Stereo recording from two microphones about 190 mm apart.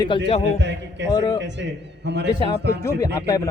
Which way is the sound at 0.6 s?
70° right (ahead or behind).